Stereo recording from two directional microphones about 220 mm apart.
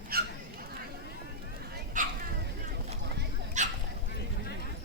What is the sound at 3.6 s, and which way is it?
Dog, 35° right (ahead or behind).